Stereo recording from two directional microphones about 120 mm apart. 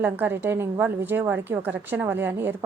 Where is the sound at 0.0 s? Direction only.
15° right (ahead or behind).